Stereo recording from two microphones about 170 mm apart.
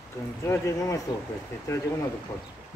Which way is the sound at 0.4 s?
20° left (ahead or behind).